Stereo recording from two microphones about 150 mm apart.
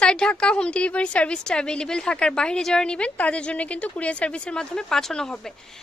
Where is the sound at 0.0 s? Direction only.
5° left (ahead or behind).